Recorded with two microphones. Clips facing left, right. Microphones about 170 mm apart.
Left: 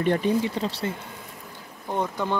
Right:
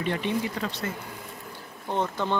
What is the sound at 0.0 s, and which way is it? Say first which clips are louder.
Speech: left 5 dB; 45° left (ahead or behind).